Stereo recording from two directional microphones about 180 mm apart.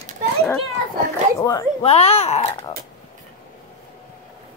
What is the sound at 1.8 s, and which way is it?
Speech, 35° left (ahead or behind).